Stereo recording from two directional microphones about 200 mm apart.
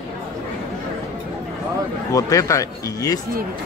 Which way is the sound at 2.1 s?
15° left (ahead or behind).